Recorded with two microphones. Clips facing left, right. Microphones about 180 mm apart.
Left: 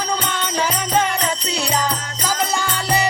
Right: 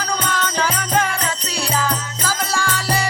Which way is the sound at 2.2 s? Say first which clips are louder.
Left 1 dB; 20° left (ahead or behind).